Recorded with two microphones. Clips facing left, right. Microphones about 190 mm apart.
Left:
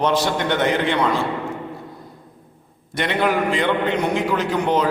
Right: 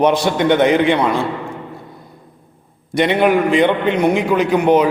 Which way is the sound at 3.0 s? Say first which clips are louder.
Right 6 dB; 20° right (ahead or behind).